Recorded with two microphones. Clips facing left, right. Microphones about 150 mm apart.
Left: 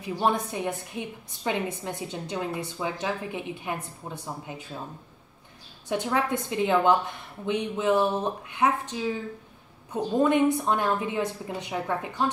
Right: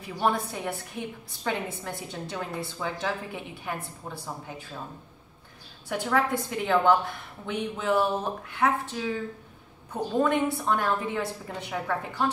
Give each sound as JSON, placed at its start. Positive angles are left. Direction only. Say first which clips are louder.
{"t": 0.2, "sound": "a woman's voice", "louder": "left 1 dB", "side_deg": 20}
{"t": 5.9, "sound": "speech", "louder": "even", "side_deg": 20}
{"t": 10.1, "sound": "a woman's voice", "louder": "left 3 dB", "side_deg": 20}